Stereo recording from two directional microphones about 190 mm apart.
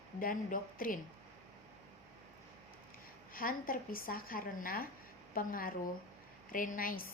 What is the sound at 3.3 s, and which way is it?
A woman's voice, 50° left (ahead or behind).